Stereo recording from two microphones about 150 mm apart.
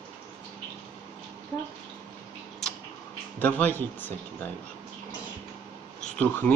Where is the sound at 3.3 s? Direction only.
10° left (ahead or behind).